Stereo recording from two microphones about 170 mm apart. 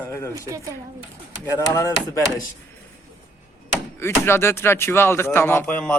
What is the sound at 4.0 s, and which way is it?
Speech, 15° left (ahead or behind).